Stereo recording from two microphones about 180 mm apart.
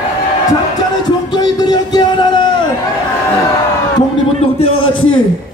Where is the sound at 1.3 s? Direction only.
20° left (ahead or behind).